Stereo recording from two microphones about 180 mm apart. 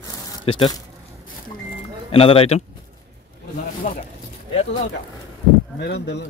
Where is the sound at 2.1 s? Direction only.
30° left (ahead or behind).